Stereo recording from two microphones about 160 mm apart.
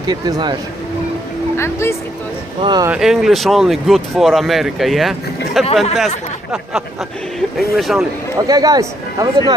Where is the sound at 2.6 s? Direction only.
25° right (ahead or behind).